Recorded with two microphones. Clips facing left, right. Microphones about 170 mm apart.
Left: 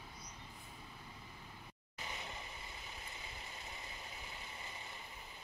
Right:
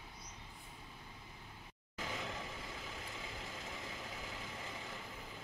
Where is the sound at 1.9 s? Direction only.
90° right.